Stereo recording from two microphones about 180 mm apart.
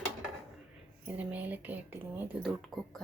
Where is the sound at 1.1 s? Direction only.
10° right (ahead or behind).